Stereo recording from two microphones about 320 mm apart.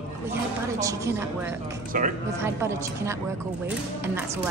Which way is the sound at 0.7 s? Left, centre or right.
Centre.